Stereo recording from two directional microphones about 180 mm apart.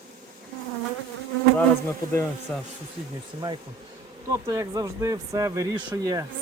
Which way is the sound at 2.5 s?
5° left (ahead or behind).